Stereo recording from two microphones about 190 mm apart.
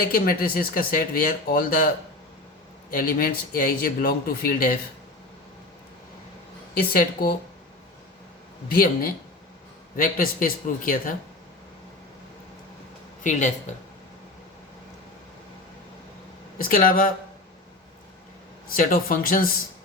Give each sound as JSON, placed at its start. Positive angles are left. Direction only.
{"t": 0.1, "sound": "a man's voice", "side_deg": 50}
{"t": 2.9, "sound": "a man's voice", "side_deg": 50}
{"t": 6.7, "sound": "a man's voice", "side_deg": 50}
{"t": 8.7, "sound": "a man's voice", "side_deg": 50}
{"t": 16.6, "sound": "a man's voice", "side_deg": 45}
{"t": 18.7, "sound": "a man's voice", "side_deg": 50}